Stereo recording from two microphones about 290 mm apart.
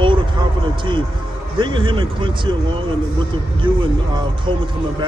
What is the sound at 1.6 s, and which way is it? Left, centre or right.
Speech, centre.